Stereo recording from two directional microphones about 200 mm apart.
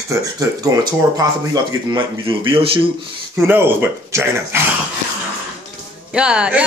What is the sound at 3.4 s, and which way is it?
Speech, 10° right (ahead or behind).